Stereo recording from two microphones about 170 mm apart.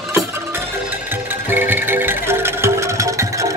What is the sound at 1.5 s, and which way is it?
Music, 10° right (ahead or behind).